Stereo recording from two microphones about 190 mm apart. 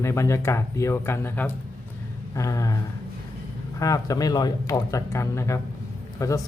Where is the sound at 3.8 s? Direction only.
20° left (ahead or behind).